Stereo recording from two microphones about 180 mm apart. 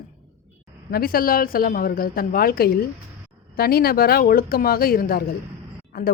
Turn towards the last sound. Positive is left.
turn(degrees=55)  # may be behind; listen again after turning